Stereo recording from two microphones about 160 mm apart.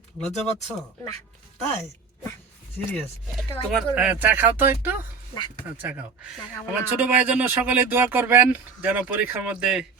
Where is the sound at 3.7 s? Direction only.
5° right (ahead or behind).